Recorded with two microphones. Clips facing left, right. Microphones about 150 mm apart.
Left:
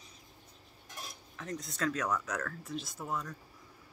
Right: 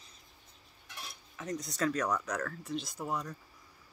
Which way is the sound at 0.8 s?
40° left (ahead or behind).